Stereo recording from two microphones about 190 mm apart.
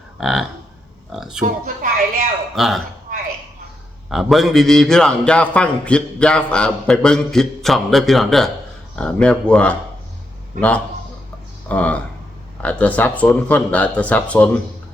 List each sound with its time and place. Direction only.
0.2 s a man's voice: centre (ahead or behind)
1.5 s a woman's voice: 45° right (ahead or behind)
2.6 s a man's voice: centre (ahead or behind)
3.1 s a sound: 45° right (ahead or behind)
4.1 s a man's voice: centre (ahead or behind)
10.5 s a man's voice: 45° right (ahead or behind)
11.7 s speech: 5° left (ahead or behind)